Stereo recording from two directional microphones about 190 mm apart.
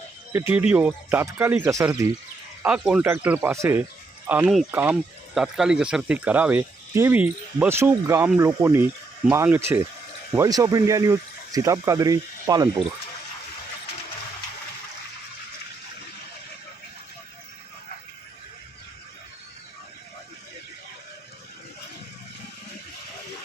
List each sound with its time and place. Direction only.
0.3 s speech: 10° right (ahead or behind)